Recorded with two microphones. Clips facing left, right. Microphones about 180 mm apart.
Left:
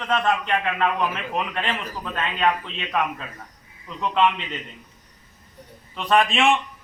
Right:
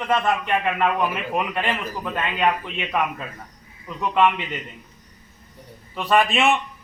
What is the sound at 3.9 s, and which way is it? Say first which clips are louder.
Speech: right 3 dB; 5° right (ahead or behind).